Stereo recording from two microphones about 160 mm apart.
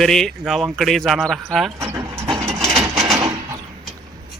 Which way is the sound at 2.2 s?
35° right (ahead or behind).